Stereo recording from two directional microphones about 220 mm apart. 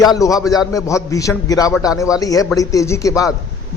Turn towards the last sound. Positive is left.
turn(degrees=15)  # may be behind; listen again after turning